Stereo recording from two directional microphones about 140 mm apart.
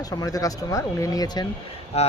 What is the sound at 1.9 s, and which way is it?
Speech, 50° left (ahead or behind).